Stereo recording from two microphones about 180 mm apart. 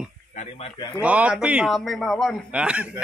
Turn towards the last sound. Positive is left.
turn(degrees=-5)  # may be behind; listen again after turning